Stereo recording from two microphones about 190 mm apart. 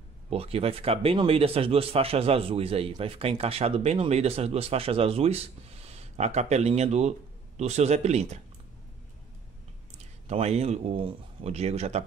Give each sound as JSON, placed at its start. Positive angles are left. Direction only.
{"t": 0.3, "sound": "speech", "side_deg": -30}
{"t": 10.2, "sound": "speech", "side_deg": -35}